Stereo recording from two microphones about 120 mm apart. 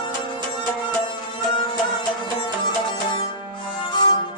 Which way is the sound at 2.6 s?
40° left (ahead or behind).